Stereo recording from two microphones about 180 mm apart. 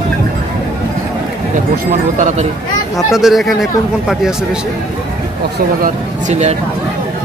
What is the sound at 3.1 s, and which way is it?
Speech, centre (ahead or behind).